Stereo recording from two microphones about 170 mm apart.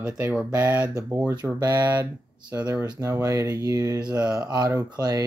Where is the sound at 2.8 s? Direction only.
20° right (ahead or behind).